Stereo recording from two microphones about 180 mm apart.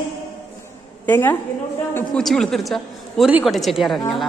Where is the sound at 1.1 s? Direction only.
10° left (ahead or behind).